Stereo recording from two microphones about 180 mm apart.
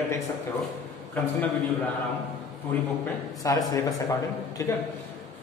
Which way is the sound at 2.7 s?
10° left (ahead or behind).